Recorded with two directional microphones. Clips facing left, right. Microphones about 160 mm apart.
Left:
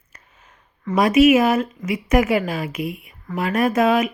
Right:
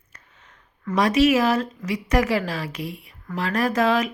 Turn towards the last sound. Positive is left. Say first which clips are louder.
# left 3 dB
turn(degrees=25)  # may be behind; listen again after turning